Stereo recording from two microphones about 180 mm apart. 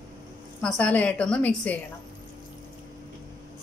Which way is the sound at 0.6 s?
5° left (ahead or behind).